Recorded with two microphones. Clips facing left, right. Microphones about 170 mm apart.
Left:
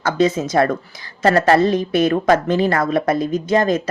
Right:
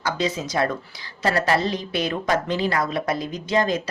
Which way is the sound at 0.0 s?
50° left (ahead or behind).